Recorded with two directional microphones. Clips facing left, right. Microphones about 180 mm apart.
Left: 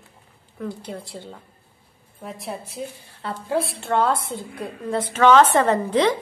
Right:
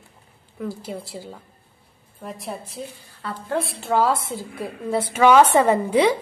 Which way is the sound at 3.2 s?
25° left (ahead or behind).